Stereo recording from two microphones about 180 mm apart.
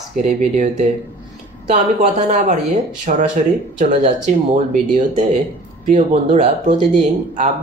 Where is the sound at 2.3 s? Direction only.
40° right (ahead or behind).